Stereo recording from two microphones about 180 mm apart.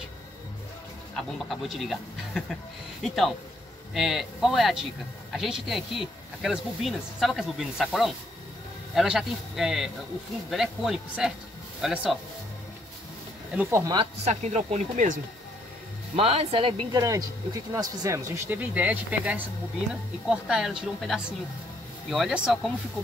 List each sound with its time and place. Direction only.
1.5 s speech: centre (ahead or behind)
13.6 s speech: 15° right (ahead or behind)
14.2 s speech: 40° right (ahead or behind)
16.2 s speech: 30° right (ahead or behind)
17.0 s speech: 20° right (ahead or behind); by 22.6 s 5° right (ahead or behind)